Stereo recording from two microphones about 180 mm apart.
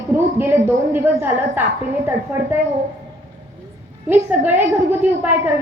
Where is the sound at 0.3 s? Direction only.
10° right (ahead or behind).